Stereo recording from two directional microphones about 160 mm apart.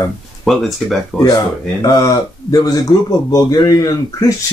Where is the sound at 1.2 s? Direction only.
25° left (ahead or behind).